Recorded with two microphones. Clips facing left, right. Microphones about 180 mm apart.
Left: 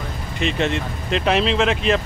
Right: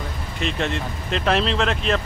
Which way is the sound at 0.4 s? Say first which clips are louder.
Left 3 dB; centre (ahead or behind).